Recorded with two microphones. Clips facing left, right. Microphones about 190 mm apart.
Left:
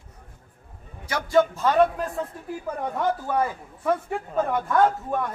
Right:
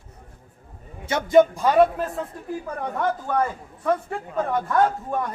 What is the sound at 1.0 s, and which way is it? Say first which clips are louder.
A man's voice: right 4 dB; 20° right (ahead or behind).